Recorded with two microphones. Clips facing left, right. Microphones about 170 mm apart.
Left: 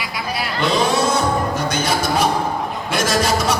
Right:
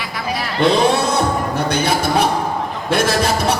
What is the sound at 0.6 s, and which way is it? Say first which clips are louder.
Music: right 4 dB; 60° right (ahead or behind).